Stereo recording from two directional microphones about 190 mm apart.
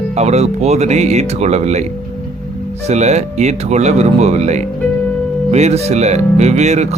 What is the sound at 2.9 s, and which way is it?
Speech, 35° right (ahead or behind).